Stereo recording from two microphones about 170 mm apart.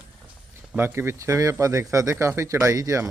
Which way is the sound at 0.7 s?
15° right (ahead or behind).